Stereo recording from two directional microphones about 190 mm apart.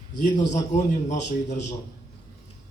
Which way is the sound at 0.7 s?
40° left (ahead or behind).